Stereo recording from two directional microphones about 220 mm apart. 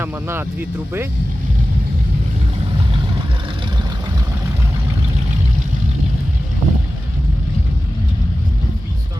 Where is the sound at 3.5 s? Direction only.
25° right (ahead or behind).